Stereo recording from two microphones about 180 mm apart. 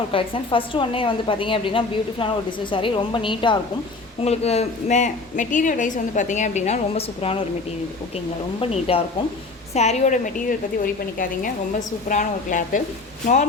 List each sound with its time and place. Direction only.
0.1 s a woman's voice: 30° left (ahead or behind)
8.6 s a woman's voice: 30° left (ahead or behind)
12.0 s speech: 45° left (ahead or behind)